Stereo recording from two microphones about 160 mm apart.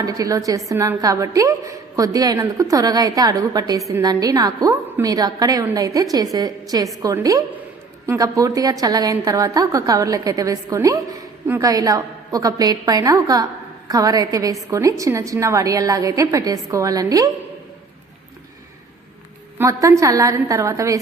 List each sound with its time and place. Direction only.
0.0 s a woman's voice: 20° right (ahead or behind)
19.5 s a woman's voice: 20° right (ahead or behind)